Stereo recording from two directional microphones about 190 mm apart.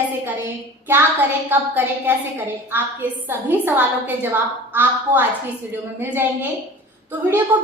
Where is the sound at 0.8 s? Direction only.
10° right (ahead or behind).